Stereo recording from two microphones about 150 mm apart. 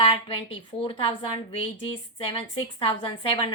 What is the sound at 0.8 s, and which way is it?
A woman's voice, 40° left (ahead or behind).